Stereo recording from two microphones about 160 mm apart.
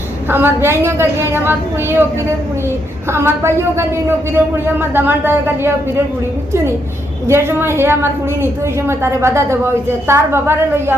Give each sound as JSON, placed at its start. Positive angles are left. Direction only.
{"t": 0.3, "sound": "a woman's voice", "side_deg": -15}
{"t": 3.1, "sound": "a woman's voice", "side_deg": -15}
{"t": 7.3, "sound": "a woman's voice", "side_deg": -15}